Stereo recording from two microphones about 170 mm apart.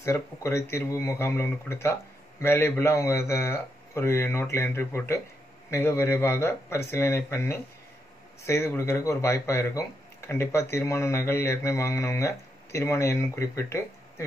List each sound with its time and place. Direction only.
0.0 s speech: 15° left (ahead or behind)